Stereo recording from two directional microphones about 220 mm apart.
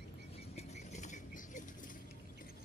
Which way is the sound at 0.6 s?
35° left (ahead or behind).